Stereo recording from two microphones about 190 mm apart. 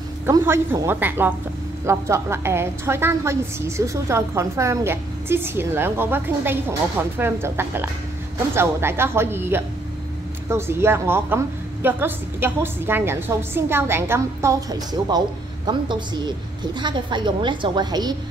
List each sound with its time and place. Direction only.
0.3 s a woman's voice: 15° right (ahead or behind)